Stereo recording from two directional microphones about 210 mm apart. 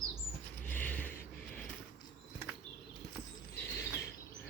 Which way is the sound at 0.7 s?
5° left (ahead or behind).